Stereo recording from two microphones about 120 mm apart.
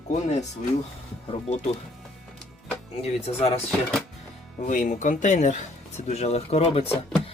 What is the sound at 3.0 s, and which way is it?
Speech, 60° left (ahead or behind).